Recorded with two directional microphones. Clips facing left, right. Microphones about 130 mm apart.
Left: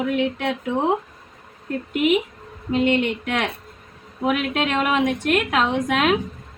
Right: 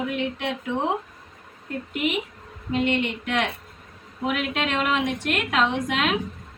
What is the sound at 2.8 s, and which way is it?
Speech, 55° left (ahead or behind).